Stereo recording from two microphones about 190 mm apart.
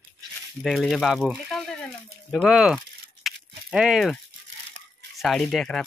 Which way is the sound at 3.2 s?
5° right (ahead or behind).